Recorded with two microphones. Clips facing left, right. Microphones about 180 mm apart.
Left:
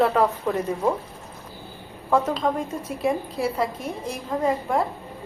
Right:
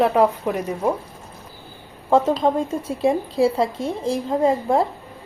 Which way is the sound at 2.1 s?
30° right (ahead or behind).